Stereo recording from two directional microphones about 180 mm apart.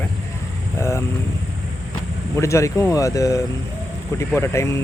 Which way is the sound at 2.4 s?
15° left (ahead or behind).